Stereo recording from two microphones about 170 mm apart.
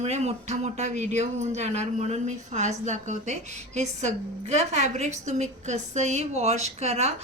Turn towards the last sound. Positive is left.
turn(degrees=-40)  # may be behind; listen again after turning